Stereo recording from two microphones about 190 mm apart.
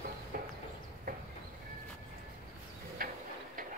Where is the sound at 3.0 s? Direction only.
50° right (ahead or behind).